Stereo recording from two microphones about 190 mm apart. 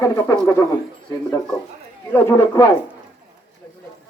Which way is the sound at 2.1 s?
15° left (ahead or behind).